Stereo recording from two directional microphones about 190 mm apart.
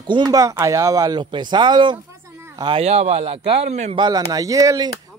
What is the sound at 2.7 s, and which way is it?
Speech, 30° right (ahead or behind).